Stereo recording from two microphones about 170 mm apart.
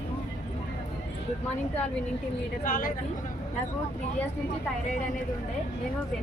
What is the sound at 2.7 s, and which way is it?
Speech, 55° left (ahead or behind).